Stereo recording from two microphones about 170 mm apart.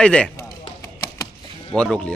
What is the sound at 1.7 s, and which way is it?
Speech, 5° left (ahead or behind).